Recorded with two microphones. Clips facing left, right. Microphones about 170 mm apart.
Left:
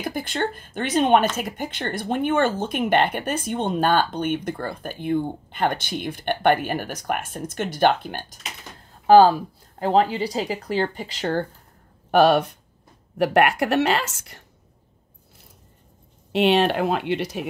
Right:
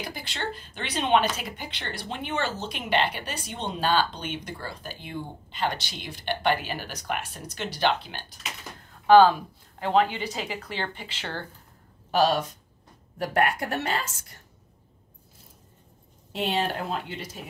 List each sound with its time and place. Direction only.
0.0 s speech: 50° left (ahead or behind)
9.0 s speech: 35° left (ahead or behind)
12.1 s speech: 60° left (ahead or behind)
13.2 s a woman's voice: 75° left (ahead or behind)
16.3 s a woman's voice: 70° left (ahead or behind)